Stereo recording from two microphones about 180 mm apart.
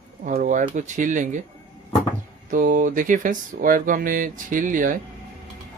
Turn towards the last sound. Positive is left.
turn(degrees=-45)  # may be behind; listen again after turning